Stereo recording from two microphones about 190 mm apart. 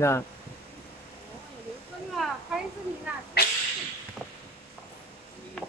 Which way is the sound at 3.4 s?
55° left (ahead or behind).